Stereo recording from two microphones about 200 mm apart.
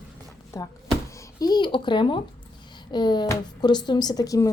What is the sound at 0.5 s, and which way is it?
A child's voice, 15° left (ahead or behind).